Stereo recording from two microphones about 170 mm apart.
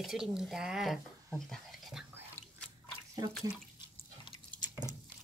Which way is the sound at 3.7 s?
25° left (ahead or behind).